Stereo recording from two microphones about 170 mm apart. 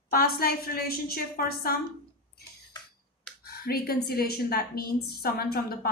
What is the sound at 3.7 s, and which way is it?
A woman's voice, 65° left (ahead or behind).